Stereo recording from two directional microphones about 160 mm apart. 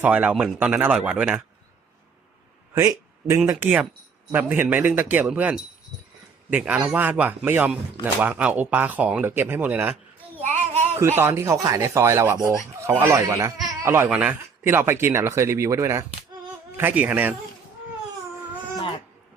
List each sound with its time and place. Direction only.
0.0 s speech: 10° right (ahead or behind)
2.7 s speech: 15° right (ahead or behind)